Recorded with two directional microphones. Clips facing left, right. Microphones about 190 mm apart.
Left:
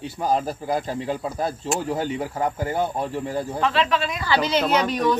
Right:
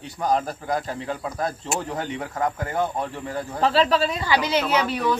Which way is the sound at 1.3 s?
10° left (ahead or behind).